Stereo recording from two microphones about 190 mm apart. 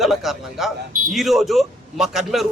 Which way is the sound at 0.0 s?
Centre (ahead or behind).